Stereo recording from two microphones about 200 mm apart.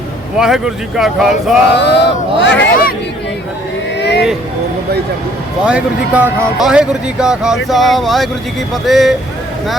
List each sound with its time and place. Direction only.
0.3 s speech: 5° right (ahead or behind)
1.7 s speech: 55° left (ahead or behind)
3.9 s vehicle: 55° left (ahead or behind)
5.6 s speech: 5° right (ahead or behind)